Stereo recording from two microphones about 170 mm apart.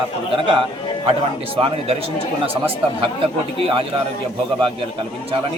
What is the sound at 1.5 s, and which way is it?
Speech, 35° right (ahead or behind).